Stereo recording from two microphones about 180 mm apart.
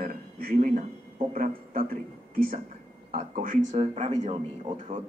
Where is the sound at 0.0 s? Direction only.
55° right (ahead or behind).